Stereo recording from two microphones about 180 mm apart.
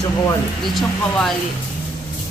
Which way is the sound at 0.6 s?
Centre (ahead or behind).